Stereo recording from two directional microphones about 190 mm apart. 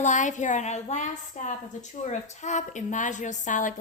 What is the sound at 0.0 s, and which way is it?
A woman's voice, 40° left (ahead or behind).